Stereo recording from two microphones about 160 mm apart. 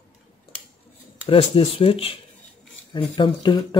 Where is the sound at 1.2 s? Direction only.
35° left (ahead or behind).